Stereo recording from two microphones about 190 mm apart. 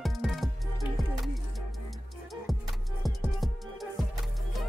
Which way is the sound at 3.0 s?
Centre (ahead or behind).